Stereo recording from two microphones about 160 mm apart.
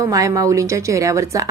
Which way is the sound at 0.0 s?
20° right (ahead or behind).